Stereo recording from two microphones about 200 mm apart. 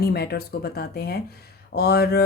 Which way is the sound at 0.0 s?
50° left (ahead or behind).